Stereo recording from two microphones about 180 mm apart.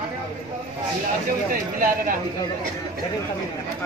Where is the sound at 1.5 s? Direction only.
50° right (ahead or behind).